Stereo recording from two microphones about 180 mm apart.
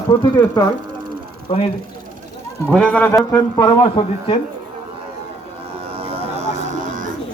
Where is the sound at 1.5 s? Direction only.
35° left (ahead or behind).